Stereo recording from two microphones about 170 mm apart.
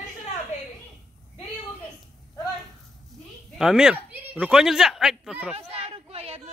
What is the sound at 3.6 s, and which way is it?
Speech, 5° right (ahead or behind).